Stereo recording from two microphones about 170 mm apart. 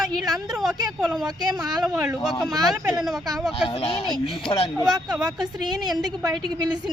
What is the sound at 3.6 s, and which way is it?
Speech, 30° left (ahead or behind).